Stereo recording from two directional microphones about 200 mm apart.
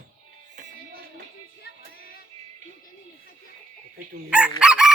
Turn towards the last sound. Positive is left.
turn(degrees=-5)  # may be behind; listen again after turning